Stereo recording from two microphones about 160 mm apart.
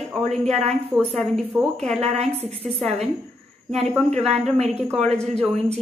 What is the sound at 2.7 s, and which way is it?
A woman's voice, centre (ahead or behind).